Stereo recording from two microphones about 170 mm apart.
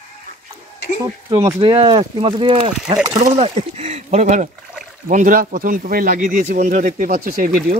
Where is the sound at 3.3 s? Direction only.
35° right (ahead or behind).